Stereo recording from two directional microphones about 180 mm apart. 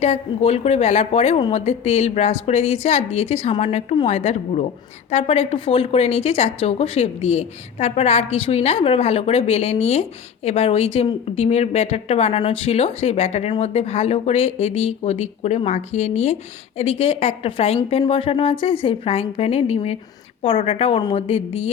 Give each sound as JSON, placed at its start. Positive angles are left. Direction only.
{"t": 0.0, "sound": "speech", "side_deg": 35}